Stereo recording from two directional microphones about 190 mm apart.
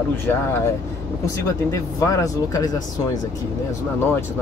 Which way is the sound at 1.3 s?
15° left (ahead or behind).